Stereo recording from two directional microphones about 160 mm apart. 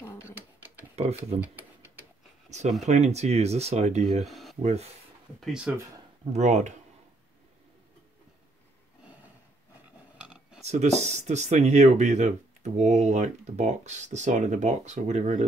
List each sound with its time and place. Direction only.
0.3 s a sound: 10° right (ahead or behind)
0.9 s speech: 40° right (ahead or behind)
2.8 s speech: 45° right (ahead or behind)
4.3 s a sound: centre (ahead or behind)
4.6 s speech: 40° right (ahead or behind)
5.4 s speech: 5° right (ahead or behind)
6.3 s speech: 45° right (ahead or behind)
10.1 s a sound: 5° right (ahead or behind)
10.6 s speech: 45° right (ahead or behind)